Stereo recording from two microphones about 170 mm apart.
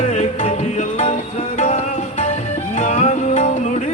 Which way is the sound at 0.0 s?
45° left (ahead or behind).